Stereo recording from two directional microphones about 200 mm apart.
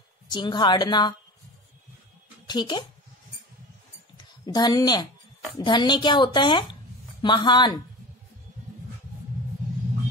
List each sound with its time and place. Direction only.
0.3 s speech: 20° left (ahead or behind)
2.4 s speech: 20° left (ahead or behind)
4.2 s a woman's voice: 20° left (ahead or behind)